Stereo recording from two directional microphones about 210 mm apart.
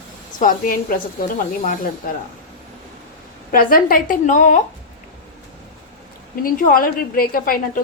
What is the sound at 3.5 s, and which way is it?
A woman's voice, 45° left (ahead or behind).